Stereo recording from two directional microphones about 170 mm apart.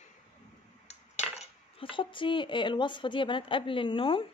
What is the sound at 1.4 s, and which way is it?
Speech, 30° left (ahead or behind).